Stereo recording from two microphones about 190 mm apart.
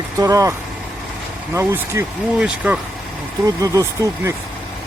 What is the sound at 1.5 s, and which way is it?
Speech, 15° right (ahead or behind).